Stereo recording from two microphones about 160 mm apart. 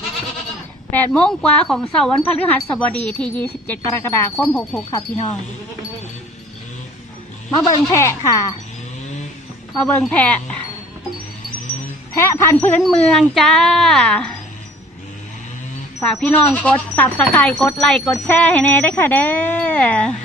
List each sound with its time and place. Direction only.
0.9 s speech: 10° left (ahead or behind)
4.4 s speech: 5° left (ahead or behind)
4.9 s speech: 25° left (ahead or behind)
7.5 s speech: 25° left (ahead or behind)
10.1 s speech: 10° left (ahead or behind)
12.1 s speech: 15° left (ahead or behind)
16.0 s speech: 10° left (ahead or behind)